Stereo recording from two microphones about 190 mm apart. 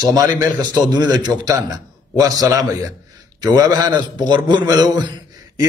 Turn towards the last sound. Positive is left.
turn(degrees=-20)  # may be behind; listen again after turning